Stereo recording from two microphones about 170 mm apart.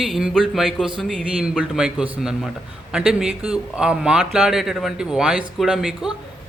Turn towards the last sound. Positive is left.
turn(degrees=0)  # may be behind; listen again after turning